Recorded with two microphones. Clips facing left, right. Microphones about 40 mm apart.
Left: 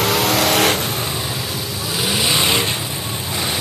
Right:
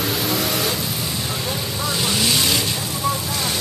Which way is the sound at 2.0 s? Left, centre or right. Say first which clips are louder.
Left 3 dB; centre.